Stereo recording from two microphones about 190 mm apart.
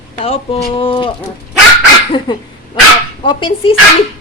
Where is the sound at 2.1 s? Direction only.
25° left (ahead or behind).